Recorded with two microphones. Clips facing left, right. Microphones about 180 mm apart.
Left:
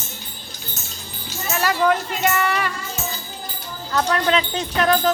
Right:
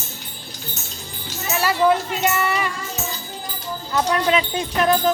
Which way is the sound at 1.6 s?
10° right (ahead or behind).